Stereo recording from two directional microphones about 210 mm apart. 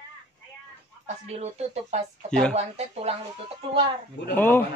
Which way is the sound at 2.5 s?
30° right (ahead or behind).